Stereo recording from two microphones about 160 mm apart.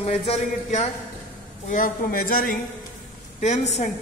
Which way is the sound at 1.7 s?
60° left (ahead or behind).